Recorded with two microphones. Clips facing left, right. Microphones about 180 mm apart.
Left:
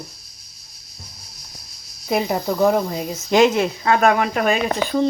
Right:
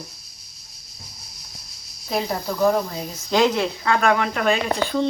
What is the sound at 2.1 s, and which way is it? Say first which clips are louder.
A woman's voice: left 4 dB; 15° left (ahead or behind).